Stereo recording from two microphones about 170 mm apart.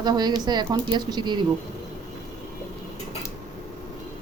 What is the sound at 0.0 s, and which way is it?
Speech, 25° right (ahead or behind).